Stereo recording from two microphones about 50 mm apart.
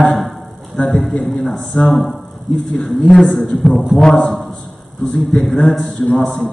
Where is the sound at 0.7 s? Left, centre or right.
Centre.